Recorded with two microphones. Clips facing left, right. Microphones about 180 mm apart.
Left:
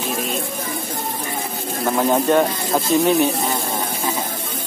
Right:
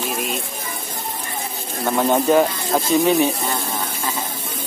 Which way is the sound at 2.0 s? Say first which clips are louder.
Right 1 dB; centre (ahead or behind).